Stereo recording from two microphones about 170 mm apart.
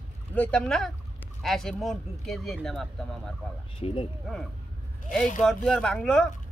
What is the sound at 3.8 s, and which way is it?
Speech, 30° left (ahead or behind).